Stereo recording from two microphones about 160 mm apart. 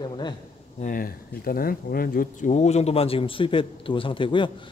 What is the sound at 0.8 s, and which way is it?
Speech, 60° left (ahead or behind).